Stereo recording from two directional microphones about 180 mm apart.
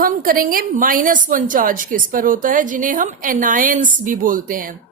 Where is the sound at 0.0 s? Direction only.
50° right (ahead or behind).